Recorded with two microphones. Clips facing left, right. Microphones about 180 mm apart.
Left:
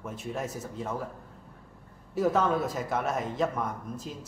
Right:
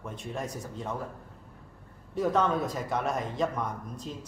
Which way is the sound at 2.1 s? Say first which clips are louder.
Left 1 dB; 5° left (ahead or behind).